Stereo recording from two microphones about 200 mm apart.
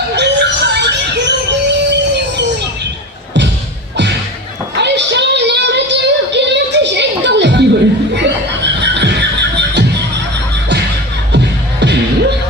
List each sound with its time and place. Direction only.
0.1 s music: 60° right (ahead or behind)
4.8 s a sound: 60° right (ahead or behind)
8.1 s music: 60° right (ahead or behind)
11.3 s music: 60° right (ahead or behind)